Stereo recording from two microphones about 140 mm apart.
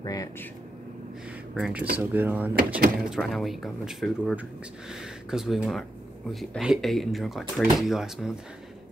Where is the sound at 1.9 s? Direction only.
15° right (ahead or behind).